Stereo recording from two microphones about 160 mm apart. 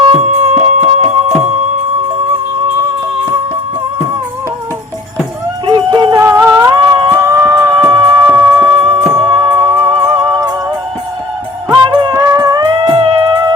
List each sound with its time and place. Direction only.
0.0 s music: 40° right (ahead or behind)
5.6 s music: 30° right (ahead or behind)
11.7 s music: 30° right (ahead or behind)